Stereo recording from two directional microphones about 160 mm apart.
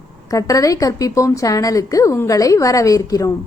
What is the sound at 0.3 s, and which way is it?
A woman's voice, 20° left (ahead or behind).